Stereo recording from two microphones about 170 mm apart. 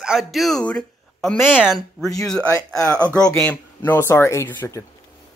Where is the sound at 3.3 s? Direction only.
10° left (ahead or behind).